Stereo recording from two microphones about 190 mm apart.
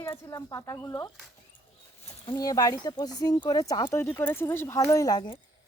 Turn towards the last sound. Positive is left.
turn(degrees=20)  # may be behind; listen again after turning